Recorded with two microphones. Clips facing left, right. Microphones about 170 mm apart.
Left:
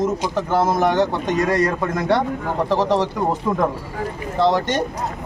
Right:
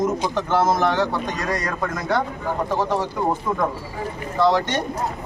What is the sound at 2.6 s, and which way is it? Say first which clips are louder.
Speech: left 5 dB; 85° left.